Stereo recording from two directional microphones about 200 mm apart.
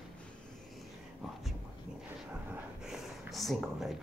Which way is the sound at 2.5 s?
Centre (ahead or behind).